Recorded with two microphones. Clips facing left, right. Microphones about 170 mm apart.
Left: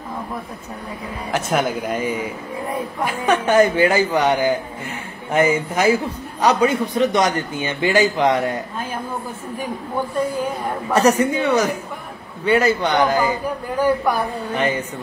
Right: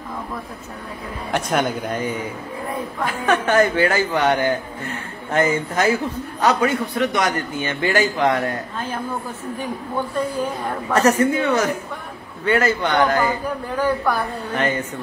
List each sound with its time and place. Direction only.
1.3 s a man's voice: 5° left (ahead or behind)
10.9 s a man's voice: 10° left (ahead or behind)